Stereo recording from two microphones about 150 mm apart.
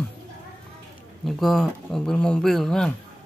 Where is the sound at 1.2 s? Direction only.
Centre (ahead or behind).